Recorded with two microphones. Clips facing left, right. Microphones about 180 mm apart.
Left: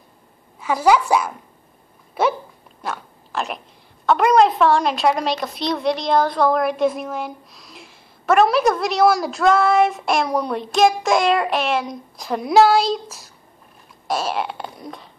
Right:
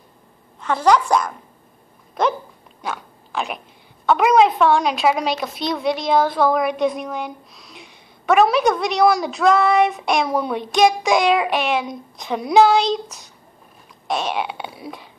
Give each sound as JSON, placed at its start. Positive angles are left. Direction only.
{"t": 0.6, "sound": "a woman's voice", "side_deg": 5}
{"t": 2.2, "sound": "dog", "side_deg": 5}
{"t": 2.8, "sound": "a woman's voice", "side_deg": 0}